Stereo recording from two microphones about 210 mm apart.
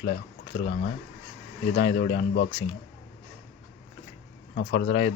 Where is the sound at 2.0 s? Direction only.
45° left (ahead or behind).